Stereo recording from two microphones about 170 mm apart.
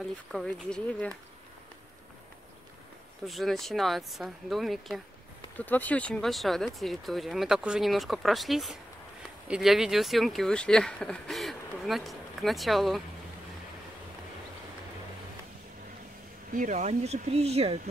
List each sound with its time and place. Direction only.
0.3 s speech: centre (ahead or behind)
3.3 s speech: centre (ahead or behind)
16.5 s speech: 45° right (ahead or behind)